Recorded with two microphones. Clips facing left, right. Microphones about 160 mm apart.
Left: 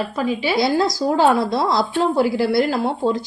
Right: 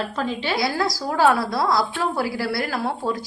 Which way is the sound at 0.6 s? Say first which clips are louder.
Left 8 dB; 25° left (ahead or behind).